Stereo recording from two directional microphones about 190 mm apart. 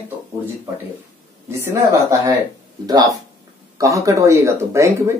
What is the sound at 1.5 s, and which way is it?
Speech, 15° right (ahead or behind).